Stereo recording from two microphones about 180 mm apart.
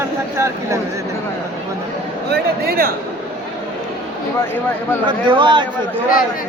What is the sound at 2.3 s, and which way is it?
Speech, 55° right (ahead or behind).